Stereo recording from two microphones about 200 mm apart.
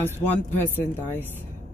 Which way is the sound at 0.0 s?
10° left (ahead or behind).